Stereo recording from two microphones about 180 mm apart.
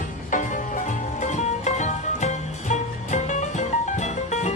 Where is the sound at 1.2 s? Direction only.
40° left (ahead or behind).